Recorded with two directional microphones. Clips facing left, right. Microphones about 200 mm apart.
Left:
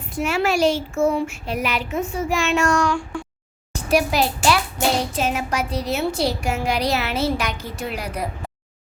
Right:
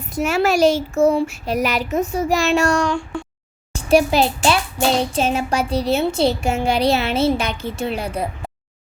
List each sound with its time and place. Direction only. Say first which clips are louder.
0.0 s a woman's voice: right 3 dB; 40° right (ahead or behind)